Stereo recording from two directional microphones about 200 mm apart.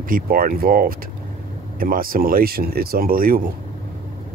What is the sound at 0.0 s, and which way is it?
Speech, 45° right (ahead or behind).